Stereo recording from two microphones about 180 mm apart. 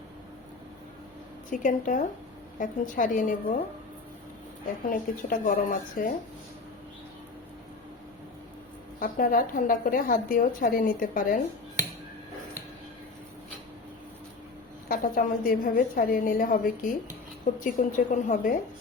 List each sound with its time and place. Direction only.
1.5 s a woman's voice: 45° left (ahead or behind)
4.9 s a woman's voice: 50° left (ahead or behind)
9.0 s a woman's voice: 50° left (ahead or behind)
14.8 s a woman's voice: 50° left (ahead or behind)